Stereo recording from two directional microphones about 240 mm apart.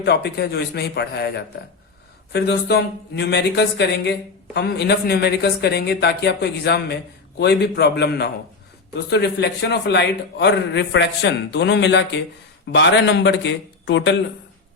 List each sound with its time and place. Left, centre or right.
0.0 s speech: left